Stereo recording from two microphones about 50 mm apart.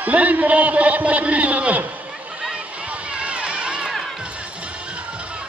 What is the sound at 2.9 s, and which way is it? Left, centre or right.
Run, right.